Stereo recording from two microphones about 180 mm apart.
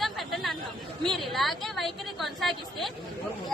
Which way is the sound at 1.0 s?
Centre (ahead or behind).